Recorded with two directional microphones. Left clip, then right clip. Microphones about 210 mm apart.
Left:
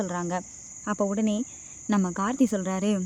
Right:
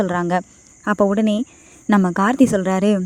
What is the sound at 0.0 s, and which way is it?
Speech, 35° right (ahead or behind).